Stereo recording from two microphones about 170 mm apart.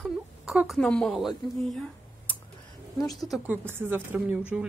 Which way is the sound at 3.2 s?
Centre (ahead or behind).